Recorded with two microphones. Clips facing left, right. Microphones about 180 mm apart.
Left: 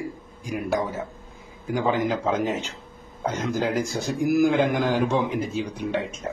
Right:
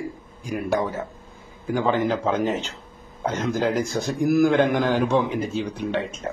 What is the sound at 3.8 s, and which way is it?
Speech, 15° right (ahead or behind).